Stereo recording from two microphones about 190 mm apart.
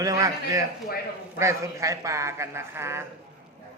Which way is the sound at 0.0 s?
20° right (ahead or behind).